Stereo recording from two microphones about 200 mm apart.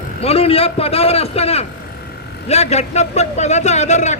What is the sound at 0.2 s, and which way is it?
A man's voice, 30° left (ahead or behind).